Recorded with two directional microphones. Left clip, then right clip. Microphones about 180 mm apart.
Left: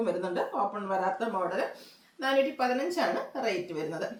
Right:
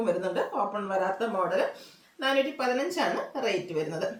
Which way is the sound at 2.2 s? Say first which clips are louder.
Even; 15° right (ahead or behind).